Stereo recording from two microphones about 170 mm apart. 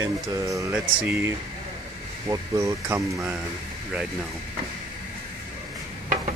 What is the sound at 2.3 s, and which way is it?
Speech, 20° right (ahead or behind).